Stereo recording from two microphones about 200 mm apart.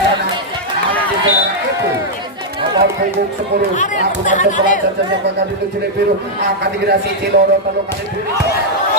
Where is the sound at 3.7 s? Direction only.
40° left (ahead or behind).